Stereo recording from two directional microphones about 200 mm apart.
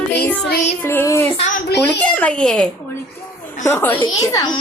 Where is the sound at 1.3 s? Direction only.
35° left (ahead or behind).